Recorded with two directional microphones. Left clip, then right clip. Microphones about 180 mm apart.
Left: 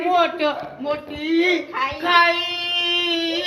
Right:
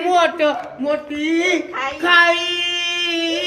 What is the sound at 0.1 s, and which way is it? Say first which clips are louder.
Speech: right 4 dB; 40° right (ahead or behind).